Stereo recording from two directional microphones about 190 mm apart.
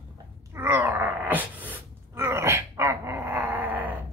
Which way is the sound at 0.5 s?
10° right (ahead or behind).